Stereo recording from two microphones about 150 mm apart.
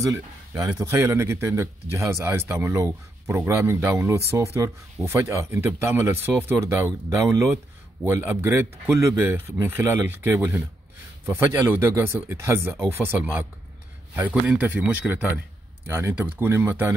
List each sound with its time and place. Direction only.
0.0 s speech: 20° right (ahead or behind)
8.0 s speech: 15° right (ahead or behind)